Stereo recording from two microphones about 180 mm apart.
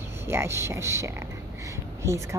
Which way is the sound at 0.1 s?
15° right (ahead or behind).